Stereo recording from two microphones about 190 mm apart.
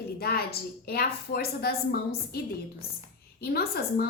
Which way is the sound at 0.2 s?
55° left (ahead or behind).